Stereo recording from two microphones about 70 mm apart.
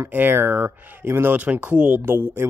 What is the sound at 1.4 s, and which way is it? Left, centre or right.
Speech, centre.